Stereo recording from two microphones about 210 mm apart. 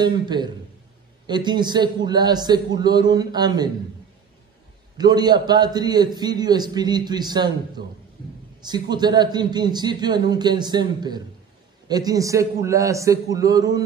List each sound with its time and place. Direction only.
0.0 s a man's voice: 20° right (ahead or behind)
4.9 s a man's voice: 20° right (ahead or behind)